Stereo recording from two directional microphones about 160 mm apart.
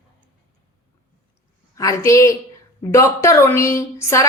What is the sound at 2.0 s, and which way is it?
Speech, 20° left (ahead or behind).